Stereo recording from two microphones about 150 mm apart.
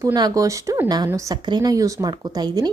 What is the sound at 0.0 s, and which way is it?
Speech, 25° right (ahead or behind).